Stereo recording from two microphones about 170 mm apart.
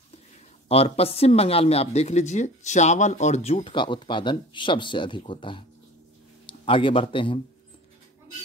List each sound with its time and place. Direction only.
0.7 s speech: 35° left (ahead or behind)